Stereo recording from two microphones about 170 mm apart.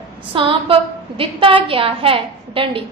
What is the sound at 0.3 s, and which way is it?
A woman's voice, 30° right (ahead or behind).